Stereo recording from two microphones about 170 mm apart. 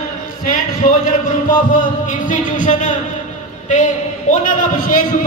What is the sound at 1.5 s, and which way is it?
A man's voice, 50° left (ahead or behind).